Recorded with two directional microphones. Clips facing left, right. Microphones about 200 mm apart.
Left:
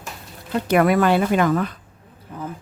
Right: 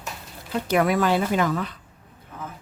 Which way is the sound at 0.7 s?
60° left (ahead or behind).